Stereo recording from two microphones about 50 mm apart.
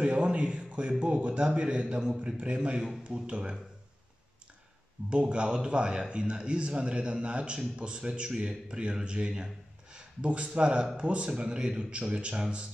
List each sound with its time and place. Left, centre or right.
0.0 s a man's voice: right
5.1 s a man's voice: right